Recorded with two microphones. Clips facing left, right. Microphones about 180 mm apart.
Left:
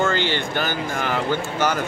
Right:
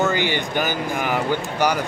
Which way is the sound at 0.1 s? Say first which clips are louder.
Right 1 dB; 15° right (ahead or behind).